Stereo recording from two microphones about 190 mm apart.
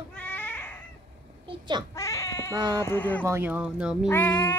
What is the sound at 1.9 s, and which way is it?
Baby cry, 15° left (ahead or behind).